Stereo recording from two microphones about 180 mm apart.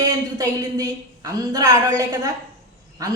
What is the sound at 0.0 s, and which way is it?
A woman's voice, 20° right (ahead or behind).